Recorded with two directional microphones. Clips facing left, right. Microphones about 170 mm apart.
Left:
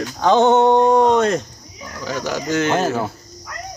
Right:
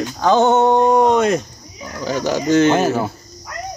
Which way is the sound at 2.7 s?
5° right (ahead or behind).